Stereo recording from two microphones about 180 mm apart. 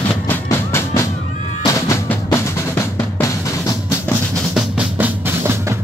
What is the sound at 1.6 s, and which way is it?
Drum, 20° left (ahead or behind).